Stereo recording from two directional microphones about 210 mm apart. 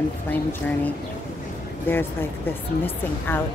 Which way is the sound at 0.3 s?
10° left (ahead or behind).